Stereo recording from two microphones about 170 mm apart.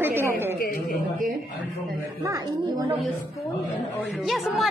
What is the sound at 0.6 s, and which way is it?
Speech, 60° left (ahead or behind).